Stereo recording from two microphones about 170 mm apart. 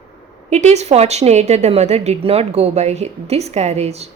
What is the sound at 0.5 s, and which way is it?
A woman's voice, 40° right (ahead or behind).